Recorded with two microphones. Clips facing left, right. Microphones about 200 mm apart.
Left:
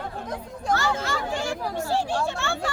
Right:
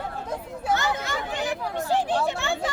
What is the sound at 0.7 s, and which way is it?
A child's voice, 20° right (ahead or behind).